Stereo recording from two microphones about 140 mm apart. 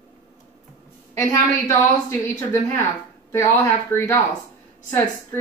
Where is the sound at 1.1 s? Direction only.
20° left (ahead or behind).